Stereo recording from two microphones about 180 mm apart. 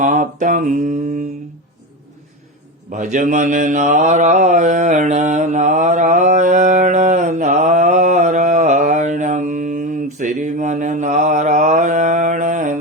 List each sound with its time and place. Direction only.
0.0 s mantra: 45° right (ahead or behind)
2.9 s mantra: 45° right (ahead or behind)